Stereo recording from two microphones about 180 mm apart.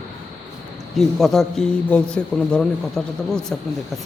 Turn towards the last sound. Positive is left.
turn(degrees=5)  # may be behind; listen again after turning